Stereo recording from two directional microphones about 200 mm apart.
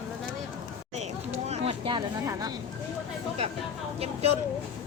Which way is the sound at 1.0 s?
35° right (ahead or behind).